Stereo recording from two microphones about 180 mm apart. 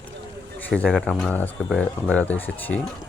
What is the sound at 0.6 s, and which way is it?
A man's voice, 5° left (ahead or behind).